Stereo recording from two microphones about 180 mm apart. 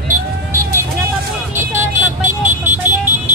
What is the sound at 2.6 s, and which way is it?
Vehicle, 10° right (ahead or behind).